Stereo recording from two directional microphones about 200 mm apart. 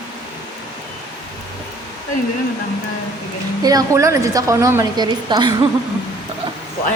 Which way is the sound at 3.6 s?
20° right (ahead or behind).